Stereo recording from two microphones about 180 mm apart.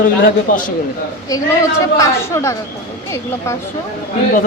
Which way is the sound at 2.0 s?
15° left (ahead or behind).